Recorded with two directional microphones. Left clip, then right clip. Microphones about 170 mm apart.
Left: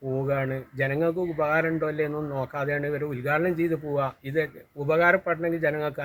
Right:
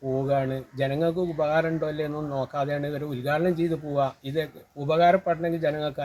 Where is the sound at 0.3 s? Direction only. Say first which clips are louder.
Right 2 dB; 45° left (ahead or behind).